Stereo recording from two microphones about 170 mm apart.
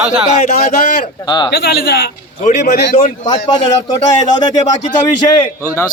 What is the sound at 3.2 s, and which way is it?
A man's voice, 25° left (ahead or behind).